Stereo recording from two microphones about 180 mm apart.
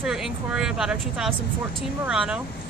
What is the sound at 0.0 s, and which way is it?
A woman's voice, 5° right (ahead or behind).